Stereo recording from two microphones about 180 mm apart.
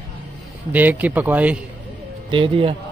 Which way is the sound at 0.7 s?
10° right (ahead or behind).